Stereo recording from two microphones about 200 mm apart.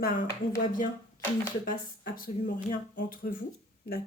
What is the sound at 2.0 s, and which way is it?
Speech, 45° left (ahead or behind).